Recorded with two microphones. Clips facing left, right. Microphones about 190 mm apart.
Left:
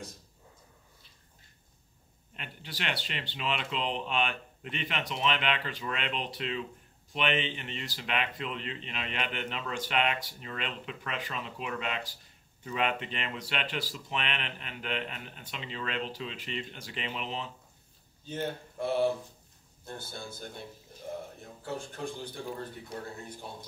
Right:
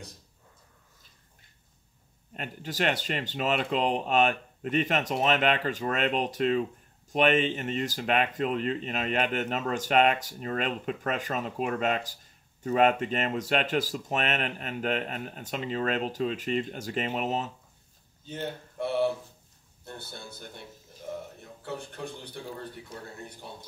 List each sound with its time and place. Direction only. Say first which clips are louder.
2.3 s speech: right 9 dB; 45° right (ahead or behind)